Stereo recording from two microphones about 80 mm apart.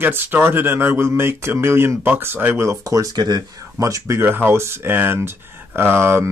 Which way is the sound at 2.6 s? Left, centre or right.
Right.